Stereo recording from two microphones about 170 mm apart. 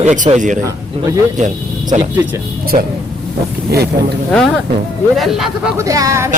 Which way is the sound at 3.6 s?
70° right (ahead or behind).